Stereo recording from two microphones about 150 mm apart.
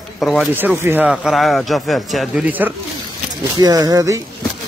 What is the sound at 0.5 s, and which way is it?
Speech, 15° right (ahead or behind).